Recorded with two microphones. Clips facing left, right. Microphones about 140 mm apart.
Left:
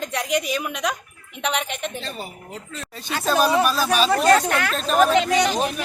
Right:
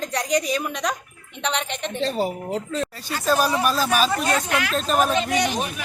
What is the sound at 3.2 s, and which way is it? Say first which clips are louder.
Speech: left 1 dB; 20° left (ahead or behind).